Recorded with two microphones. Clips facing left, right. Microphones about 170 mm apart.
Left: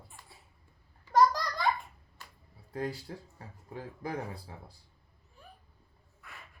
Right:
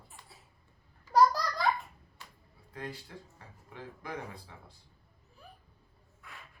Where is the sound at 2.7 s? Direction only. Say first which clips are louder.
Left 6 dB; 35° left (ahead or behind).